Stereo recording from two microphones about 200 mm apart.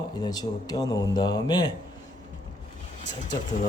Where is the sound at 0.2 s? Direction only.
20° left (ahead or behind).